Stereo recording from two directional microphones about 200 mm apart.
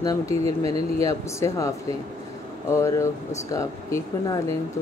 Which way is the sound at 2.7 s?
15° left (ahead or behind).